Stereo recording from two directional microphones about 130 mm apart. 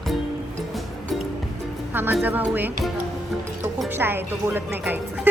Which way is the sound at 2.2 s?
15° right (ahead or behind).